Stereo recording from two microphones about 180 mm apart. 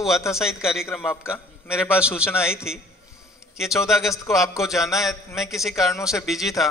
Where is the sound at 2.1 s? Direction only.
15° left (ahead or behind).